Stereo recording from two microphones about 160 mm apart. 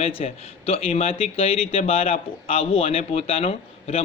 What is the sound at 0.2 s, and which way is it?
A man's voice, 40° left (ahead or behind).